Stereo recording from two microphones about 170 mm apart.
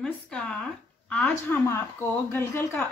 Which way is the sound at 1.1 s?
10° left (ahead or behind).